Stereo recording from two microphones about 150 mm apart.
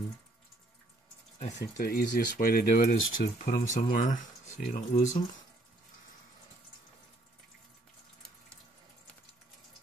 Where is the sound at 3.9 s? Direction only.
55° left (ahead or behind).